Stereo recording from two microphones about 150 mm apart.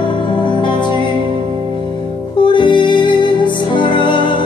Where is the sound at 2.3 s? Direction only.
30° left (ahead or behind).